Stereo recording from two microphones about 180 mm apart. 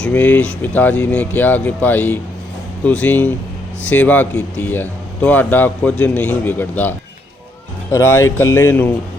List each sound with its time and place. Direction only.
0.0 s speech: 10° left (ahead or behind)